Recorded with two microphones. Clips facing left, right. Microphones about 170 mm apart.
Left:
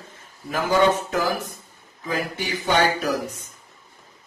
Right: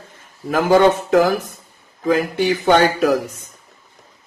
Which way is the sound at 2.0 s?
70° right (ahead or behind).